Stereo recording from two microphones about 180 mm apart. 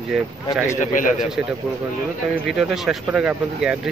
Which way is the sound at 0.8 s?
45° left (ahead or behind).